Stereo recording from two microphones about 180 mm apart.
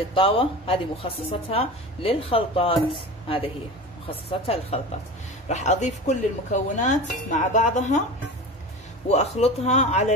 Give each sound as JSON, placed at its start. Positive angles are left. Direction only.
{"t": 0.1, "sound": "speech", "side_deg": 30}
{"t": 9.1, "sound": "speech", "side_deg": 35}